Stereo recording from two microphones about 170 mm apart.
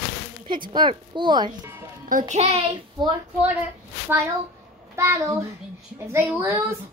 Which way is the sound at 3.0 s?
25° right (ahead or behind).